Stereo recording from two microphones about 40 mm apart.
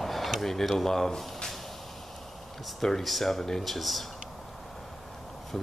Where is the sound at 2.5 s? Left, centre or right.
Centre.